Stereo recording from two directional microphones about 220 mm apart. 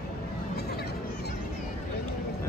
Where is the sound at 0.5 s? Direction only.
45° left (ahead or behind).